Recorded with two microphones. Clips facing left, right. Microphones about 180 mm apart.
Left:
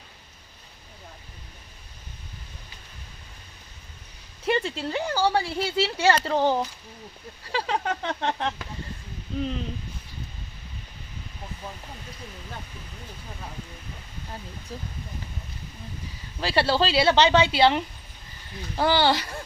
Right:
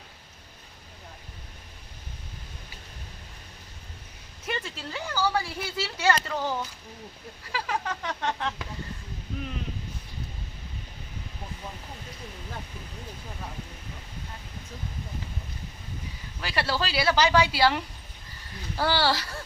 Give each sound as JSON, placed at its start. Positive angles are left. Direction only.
{"t": 4.4, "sound": "speech", "side_deg": 30}
{"t": 16.4, "sound": "speech", "side_deg": 30}